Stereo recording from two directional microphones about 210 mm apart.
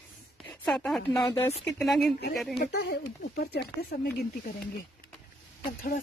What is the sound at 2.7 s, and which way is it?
Speech, 50° left (ahead or behind).